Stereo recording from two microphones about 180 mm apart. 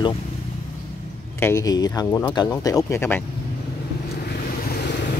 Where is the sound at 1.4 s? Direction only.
15° left (ahead or behind).